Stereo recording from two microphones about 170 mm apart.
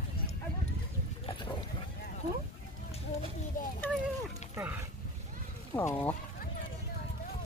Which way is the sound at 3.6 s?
55° left (ahead or behind).